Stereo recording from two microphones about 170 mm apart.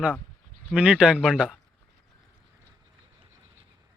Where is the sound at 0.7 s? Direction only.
5° right (ahead or behind).